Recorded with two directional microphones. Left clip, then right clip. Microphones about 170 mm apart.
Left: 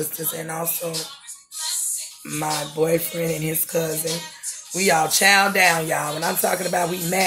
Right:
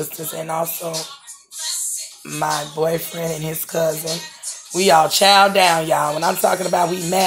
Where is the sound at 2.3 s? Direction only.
10° right (ahead or behind).